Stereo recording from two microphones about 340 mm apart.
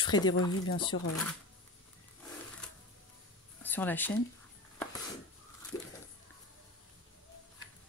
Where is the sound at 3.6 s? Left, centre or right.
Centre.